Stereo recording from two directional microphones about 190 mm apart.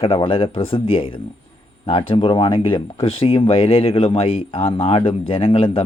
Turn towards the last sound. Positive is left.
turn(degrees=30)  # may be behind; listen again after turning